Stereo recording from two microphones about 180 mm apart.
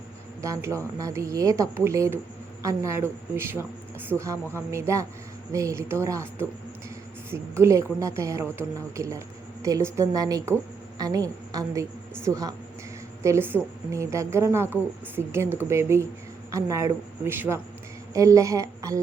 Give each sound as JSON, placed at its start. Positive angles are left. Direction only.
{"t": 0.4, "sound": "a woman's voice", "side_deg": -15}